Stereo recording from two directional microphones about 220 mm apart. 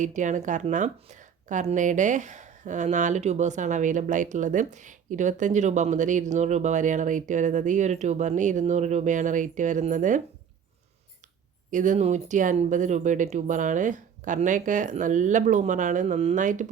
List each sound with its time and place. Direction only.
0.0 s speech: 35° right (ahead or behind)
11.7 s speech: 35° right (ahead or behind)